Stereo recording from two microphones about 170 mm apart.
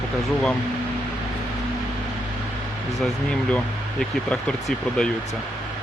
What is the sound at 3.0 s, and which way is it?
Speech, 5° left (ahead or behind).